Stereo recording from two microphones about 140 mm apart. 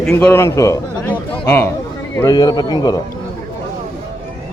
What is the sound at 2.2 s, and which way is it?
Speech, 25° left (ahead or behind).